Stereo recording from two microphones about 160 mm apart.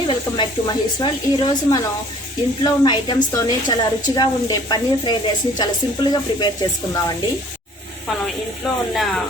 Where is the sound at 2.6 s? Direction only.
25° left (ahead or behind).